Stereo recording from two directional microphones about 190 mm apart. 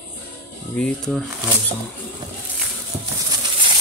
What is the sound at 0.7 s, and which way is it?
Speech, 5° left (ahead or behind).